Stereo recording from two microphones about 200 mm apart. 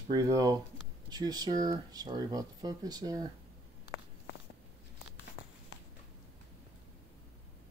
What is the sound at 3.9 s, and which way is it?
Walk, 50° left (ahead or behind).